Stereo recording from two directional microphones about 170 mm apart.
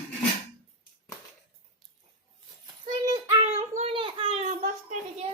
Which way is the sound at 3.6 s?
35° right (ahead or behind).